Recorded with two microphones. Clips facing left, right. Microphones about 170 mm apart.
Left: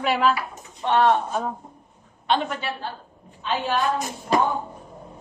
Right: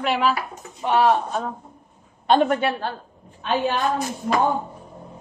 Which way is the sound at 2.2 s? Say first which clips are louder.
Right 6 dB; 50° right (ahead or behind).